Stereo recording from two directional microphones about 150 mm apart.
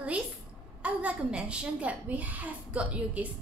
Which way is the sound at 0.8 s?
10° right (ahead or behind).